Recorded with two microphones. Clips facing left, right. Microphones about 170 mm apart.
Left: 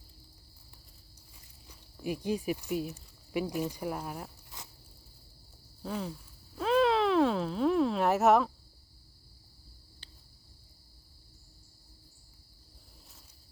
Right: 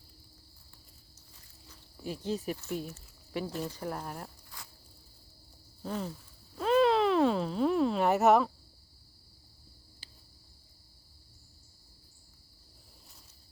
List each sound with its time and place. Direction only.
1.6 s speech: 15° left (ahead or behind)
4.5 s insect: 20° left (ahead or behind)
5.8 s cricket: centre (ahead or behind)
6.6 s speech: centre (ahead or behind)
10.0 s cricket: 10° right (ahead or behind)